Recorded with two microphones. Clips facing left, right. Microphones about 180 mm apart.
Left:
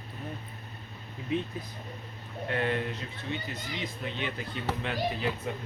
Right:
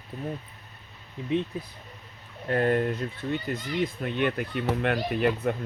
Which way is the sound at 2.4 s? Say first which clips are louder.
Right 6 dB; 40° right (ahead or behind).